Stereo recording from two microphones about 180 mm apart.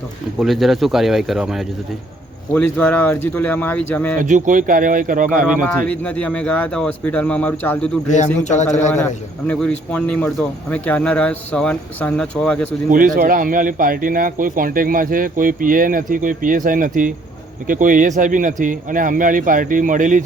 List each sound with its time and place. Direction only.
0.3 s speech: centre (ahead or behind)
2.5 s speech: 10° left (ahead or behind)
4.2 s speech: 45° right (ahead or behind)
5.6 s speech: 5° left (ahead or behind)
8.4 s a man's voice: 40° left (ahead or behind)
9.5 s speech: 5° left (ahead or behind)
12.9 s speech: 50° right (ahead or behind)